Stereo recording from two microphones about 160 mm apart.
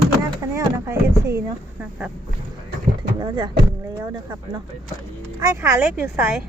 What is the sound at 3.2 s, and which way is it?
Speech, 30° right (ahead or behind).